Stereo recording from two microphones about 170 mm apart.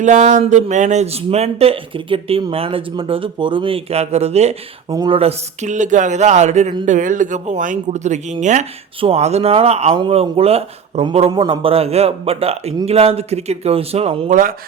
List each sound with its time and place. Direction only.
0.0 s speech: 45° right (ahead or behind)
4.9 s speech: 25° right (ahead or behind)
14.3 s speech: 55° right (ahead or behind)